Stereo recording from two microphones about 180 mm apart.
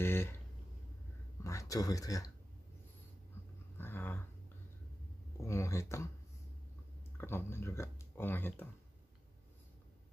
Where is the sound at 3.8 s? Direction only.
10° left (ahead or behind).